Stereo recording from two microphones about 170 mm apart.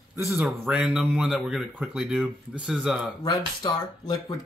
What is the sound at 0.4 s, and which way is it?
Speech, 5° right (ahead or behind).